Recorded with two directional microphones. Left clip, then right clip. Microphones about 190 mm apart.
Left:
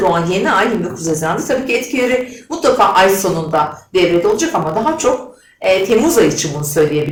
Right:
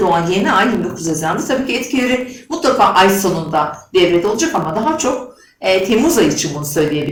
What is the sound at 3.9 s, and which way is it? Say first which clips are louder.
Speech: even; centre (ahead or behind).